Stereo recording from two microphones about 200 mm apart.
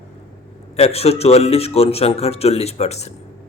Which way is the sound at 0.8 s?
30° left (ahead or behind).